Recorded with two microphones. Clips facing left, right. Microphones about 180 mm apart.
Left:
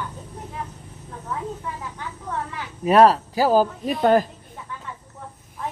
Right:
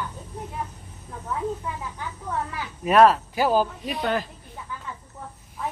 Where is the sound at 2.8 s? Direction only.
30° left (ahead or behind).